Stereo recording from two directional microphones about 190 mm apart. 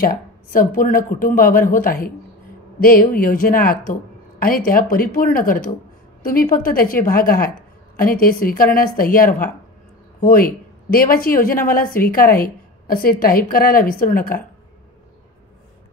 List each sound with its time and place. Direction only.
0.0 s a woman's voice: 50° left (ahead or behind)